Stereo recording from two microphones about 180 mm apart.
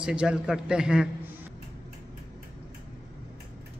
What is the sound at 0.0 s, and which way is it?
A man's voice, 5° right (ahead or behind).